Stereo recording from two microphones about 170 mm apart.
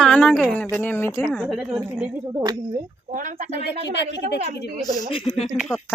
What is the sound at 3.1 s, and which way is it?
Speech, 50° right (ahead or behind).